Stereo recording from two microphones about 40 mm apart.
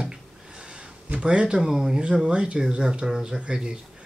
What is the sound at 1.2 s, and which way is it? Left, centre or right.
Speech, right.